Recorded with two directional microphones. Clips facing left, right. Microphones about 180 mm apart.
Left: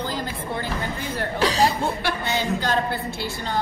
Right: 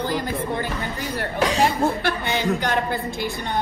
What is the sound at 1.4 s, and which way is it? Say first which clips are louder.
Speech: right 1 dB; 35° left (ahead or behind).